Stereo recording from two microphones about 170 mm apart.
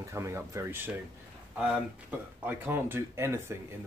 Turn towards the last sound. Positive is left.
turn(degrees=-15)  # may be behind; listen again after turning